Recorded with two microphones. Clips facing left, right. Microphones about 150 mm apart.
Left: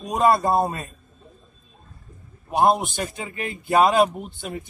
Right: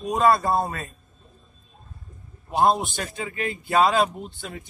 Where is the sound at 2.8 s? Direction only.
20° left (ahead or behind).